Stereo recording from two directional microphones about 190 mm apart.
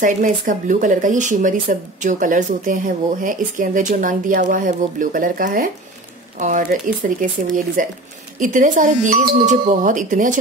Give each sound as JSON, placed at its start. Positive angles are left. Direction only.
{"t": 0.0, "sound": "speech", "side_deg": -45}